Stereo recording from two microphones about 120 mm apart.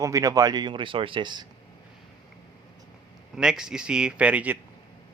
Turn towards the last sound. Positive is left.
turn(degrees=-10)  # may be behind; listen again after turning